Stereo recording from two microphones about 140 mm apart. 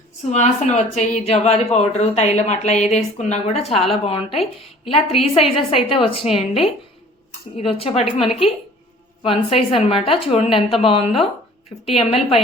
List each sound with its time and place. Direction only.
0.3 s a woman's voice: 55° left (ahead or behind)
7.6 s a woman's voice: 40° left (ahead or behind)